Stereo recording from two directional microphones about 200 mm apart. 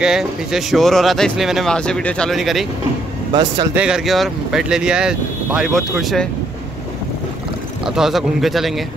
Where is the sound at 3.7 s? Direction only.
5° right (ahead or behind).